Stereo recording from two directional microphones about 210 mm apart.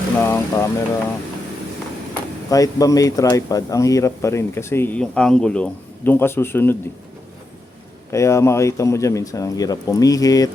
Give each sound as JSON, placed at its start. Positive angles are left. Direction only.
{"t": 0.2, "sound": "speech", "side_deg": 10}
{"t": 2.5, "sound": "speech", "side_deg": 15}
{"t": 8.1, "sound": "speech", "side_deg": 15}